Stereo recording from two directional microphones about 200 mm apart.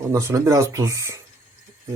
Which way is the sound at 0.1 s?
15° right (ahead or behind).